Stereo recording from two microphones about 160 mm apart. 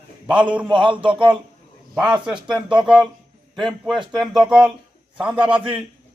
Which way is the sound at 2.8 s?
5° right (ahead or behind).